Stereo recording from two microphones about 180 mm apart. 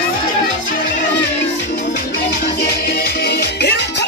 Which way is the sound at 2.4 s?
65° left (ahead or behind).